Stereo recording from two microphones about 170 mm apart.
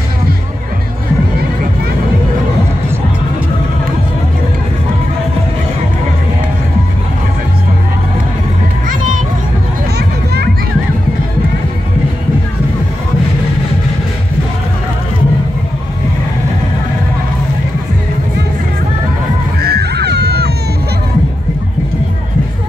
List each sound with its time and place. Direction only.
8.8 s music: 50° right (ahead or behind)
9.9 s a sound: 70° right (ahead or behind)
19.7 s crowd: 70° right (ahead or behind)